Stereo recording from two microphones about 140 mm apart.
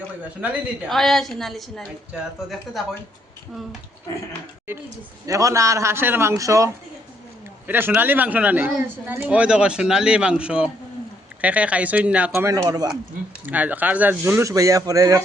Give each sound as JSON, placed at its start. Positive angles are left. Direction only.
{"t": 0.9, "sound": "a woman's voice", "side_deg": 0}
{"t": 5.2, "sound": "a man's voice", "side_deg": -25}
{"t": 7.7, "sound": "speech", "side_deg": -15}
{"t": 12.5, "sound": "a man's voice", "side_deg": -25}
{"t": 13.4, "sound": "speech", "side_deg": -10}